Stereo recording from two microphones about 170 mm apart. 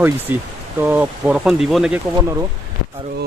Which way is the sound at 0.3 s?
10° right (ahead or behind).